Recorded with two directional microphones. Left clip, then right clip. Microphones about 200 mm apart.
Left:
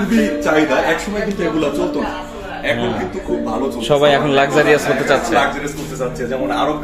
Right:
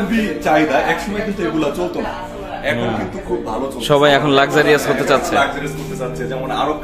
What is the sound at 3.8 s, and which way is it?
A man's voice, 25° right (ahead or behind).